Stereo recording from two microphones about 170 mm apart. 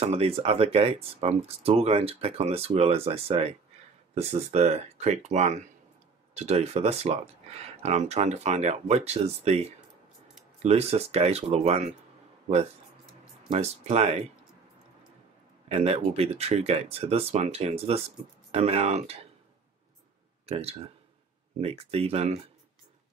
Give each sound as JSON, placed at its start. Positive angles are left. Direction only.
{"t": 0.0, "sound": "speech", "side_deg": -35}
{"t": 13.5, "sound": "speech", "side_deg": -40}
{"t": 15.7, "sound": "speech", "side_deg": -35}
{"t": 20.4, "sound": "speech", "side_deg": -35}